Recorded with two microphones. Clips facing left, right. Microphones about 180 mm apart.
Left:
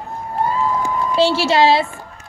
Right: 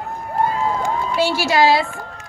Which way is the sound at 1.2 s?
30° left (ahead or behind).